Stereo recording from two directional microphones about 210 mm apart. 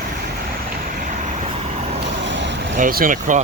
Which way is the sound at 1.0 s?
35° right (ahead or behind).